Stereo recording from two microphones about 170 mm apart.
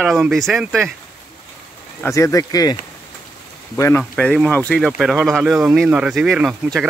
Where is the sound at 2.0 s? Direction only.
15° left (ahead or behind).